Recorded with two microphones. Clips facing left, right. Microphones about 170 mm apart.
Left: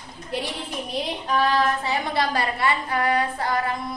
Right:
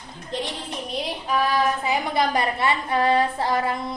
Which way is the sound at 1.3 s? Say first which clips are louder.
Even; 10° right (ahead or behind).